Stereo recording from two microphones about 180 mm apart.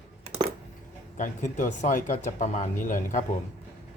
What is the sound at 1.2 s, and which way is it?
Speech, 45° left (ahead or behind).